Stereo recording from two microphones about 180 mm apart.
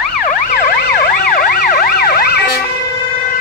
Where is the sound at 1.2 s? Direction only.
55° left (ahead or behind).